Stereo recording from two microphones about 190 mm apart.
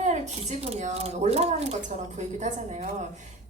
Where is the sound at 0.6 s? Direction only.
35° right (ahead or behind).